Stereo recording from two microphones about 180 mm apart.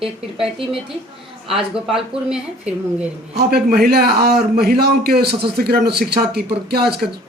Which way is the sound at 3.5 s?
60° right (ahead or behind).